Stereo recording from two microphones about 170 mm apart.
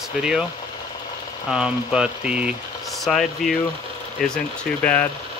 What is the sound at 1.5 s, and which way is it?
Speech, 5° right (ahead or behind).